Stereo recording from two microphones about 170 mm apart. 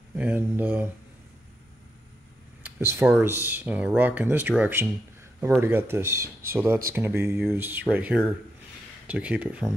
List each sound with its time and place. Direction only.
0.1 s speech: 10° right (ahead or behind)
2.6 s speech: 15° right (ahead or behind)